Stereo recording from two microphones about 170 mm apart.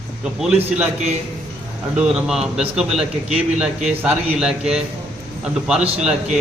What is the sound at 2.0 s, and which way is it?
A man's voice, 5° right (ahead or behind).